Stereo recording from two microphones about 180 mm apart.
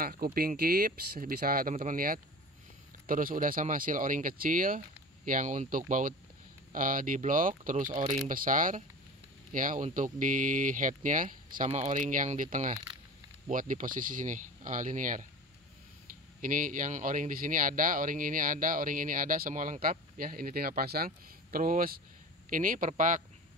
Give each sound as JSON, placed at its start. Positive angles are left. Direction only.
{"t": 0.0, "sound": "speech", "side_deg": -55}
{"t": 7.9, "sound": "speech", "side_deg": -35}
{"t": 8.3, "sound": "speech", "side_deg": -50}
{"t": 16.3, "sound": "speech", "side_deg": -50}